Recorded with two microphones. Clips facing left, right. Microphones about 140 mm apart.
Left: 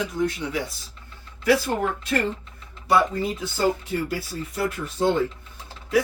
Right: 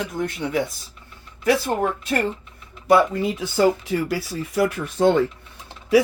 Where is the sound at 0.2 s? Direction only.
55° right (ahead or behind).